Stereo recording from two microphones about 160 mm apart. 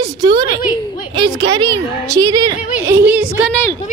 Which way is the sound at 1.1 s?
30° right (ahead or behind).